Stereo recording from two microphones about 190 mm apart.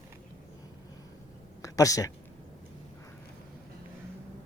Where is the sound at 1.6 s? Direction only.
15° left (ahead or behind).